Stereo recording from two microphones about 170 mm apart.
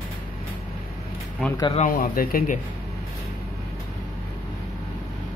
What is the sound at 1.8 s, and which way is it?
Speech, 60° left (ahead or behind).